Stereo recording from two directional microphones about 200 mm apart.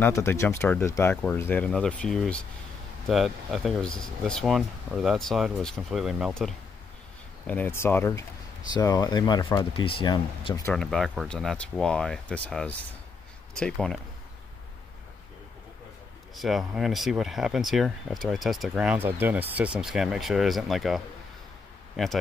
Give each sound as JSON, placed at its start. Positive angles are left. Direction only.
{"t": 0.0, "sound": "speech", "side_deg": 10}
{"t": 7.4, "sound": "speech", "side_deg": 10}
{"t": 10.7, "sound": "speech", "side_deg": 0}
{"t": 16.3, "sound": "speech", "side_deg": 0}